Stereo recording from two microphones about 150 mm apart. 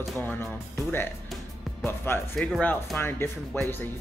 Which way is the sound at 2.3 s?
5° left (ahead or behind).